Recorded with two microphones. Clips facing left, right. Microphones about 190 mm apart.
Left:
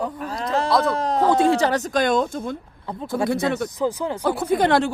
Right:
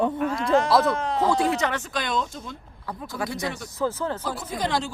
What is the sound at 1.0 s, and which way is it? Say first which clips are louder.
Speech: left 4 dB; 40° left (ahead or behind).